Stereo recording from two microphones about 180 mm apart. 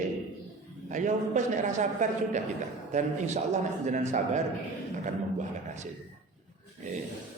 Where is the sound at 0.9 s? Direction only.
45° right (ahead or behind).